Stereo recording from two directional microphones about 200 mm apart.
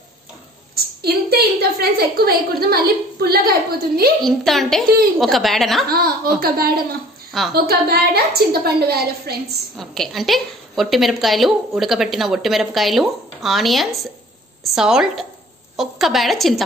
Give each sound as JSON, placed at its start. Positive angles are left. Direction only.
{"t": 1.0, "sound": "a woman's voice", "side_deg": -50}
{"t": 4.2, "sound": "a woman's voice", "side_deg": 0}
{"t": 5.9, "sound": "a woman's voice", "side_deg": -50}
{"t": 9.8, "sound": "a woman's voice", "side_deg": 0}